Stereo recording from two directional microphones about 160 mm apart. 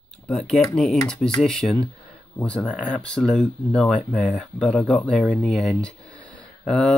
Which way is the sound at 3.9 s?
10° right (ahead or behind).